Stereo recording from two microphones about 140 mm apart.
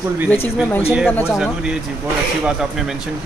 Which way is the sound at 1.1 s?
15° left (ahead or behind).